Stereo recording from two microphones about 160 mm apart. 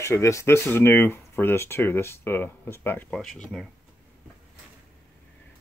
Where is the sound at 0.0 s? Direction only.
20° left (ahead or behind).